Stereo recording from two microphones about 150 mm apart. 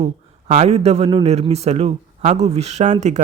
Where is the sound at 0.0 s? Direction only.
50° right (ahead or behind).